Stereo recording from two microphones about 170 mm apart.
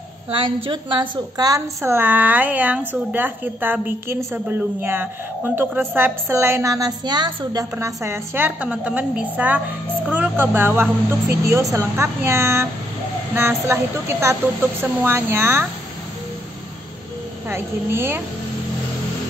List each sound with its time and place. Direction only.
0.4 s a woman's voice: 30° right (ahead or behind); by 15.6 s 15° right (ahead or behind)
17.5 s a woman's voice: 15° right (ahead or behind)